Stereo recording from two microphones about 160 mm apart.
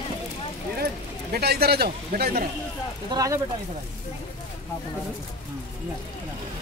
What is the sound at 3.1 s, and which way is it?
Speech, 20° right (ahead or behind).